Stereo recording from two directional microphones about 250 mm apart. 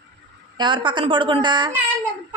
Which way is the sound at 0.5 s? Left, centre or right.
Centre.